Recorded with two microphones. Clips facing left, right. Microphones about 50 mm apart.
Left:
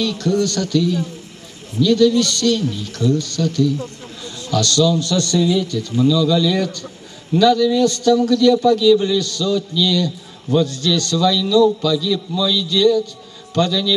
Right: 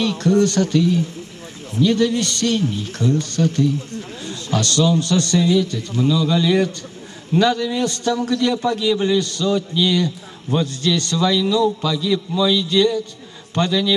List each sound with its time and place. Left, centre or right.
0.0 s a man's voice: right